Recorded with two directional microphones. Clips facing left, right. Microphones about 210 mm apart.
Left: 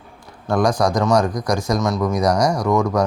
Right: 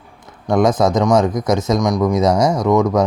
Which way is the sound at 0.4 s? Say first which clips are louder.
Right 3 dB; 20° right (ahead or behind).